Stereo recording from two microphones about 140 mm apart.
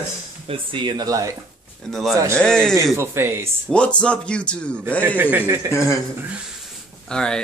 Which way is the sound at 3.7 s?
5° left (ahead or behind).